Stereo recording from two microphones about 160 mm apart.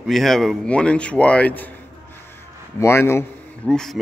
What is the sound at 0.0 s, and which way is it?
Speech, centre (ahead or behind).